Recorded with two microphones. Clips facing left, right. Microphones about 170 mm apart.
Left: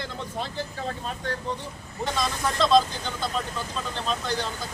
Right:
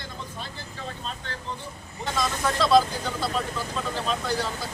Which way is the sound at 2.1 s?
Centre (ahead or behind).